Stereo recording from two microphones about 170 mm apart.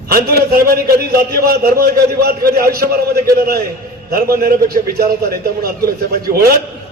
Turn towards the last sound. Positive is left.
turn(degrees=-65)  # may be behind; listen again after turning